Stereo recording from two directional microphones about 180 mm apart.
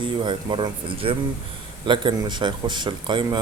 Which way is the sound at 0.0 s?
25° right (ahead or behind).